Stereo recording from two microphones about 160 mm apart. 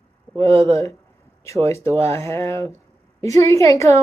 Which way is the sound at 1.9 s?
40° right (ahead or behind).